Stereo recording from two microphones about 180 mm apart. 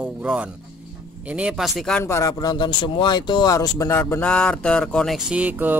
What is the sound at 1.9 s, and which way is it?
Speech, 15° left (ahead or behind).